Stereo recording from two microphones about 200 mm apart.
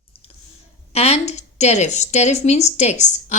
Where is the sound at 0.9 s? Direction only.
30° left (ahead or behind).